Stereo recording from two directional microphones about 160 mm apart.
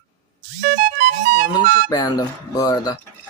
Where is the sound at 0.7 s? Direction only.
70° right (ahead or behind).